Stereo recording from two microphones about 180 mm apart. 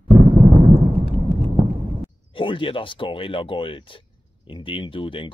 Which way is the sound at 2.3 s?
30° left (ahead or behind).